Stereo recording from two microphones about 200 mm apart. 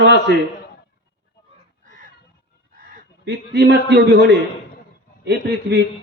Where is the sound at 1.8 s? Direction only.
40° right (ahead or behind).